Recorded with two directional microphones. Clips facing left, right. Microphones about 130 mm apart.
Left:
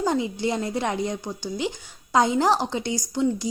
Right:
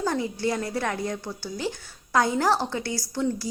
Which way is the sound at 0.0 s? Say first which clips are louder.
Left 2 dB; 20° left (ahead or behind).